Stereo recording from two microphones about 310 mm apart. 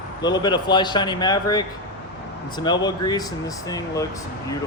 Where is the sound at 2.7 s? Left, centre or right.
Centre.